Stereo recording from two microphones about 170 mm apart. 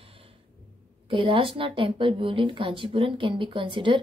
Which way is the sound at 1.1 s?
30° right (ahead or behind).